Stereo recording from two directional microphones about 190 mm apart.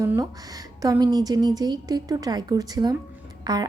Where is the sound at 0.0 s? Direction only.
15° right (ahead or behind).